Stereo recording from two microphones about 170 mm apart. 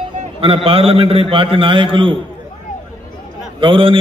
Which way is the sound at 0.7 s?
35° right (ahead or behind).